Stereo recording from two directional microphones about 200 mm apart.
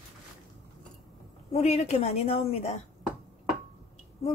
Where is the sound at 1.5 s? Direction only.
30° left (ahead or behind).